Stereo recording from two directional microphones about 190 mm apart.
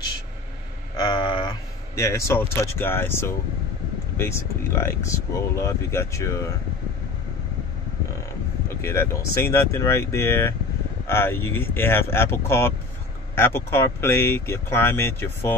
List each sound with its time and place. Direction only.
0.9 s speech: 25° left (ahead or behind)
4.7 s speech: 15° left (ahead or behind)
8.6 s speech: 15° left (ahead or behind)